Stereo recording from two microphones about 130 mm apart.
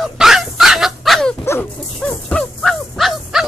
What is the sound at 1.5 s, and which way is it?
Dog, 15° left (ahead or behind).